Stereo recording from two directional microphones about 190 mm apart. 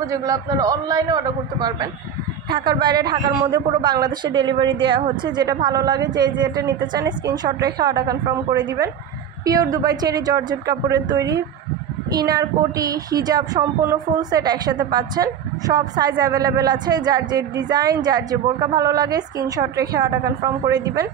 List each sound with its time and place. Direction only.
0.0 s a man's voice: 15° right (ahead or behind)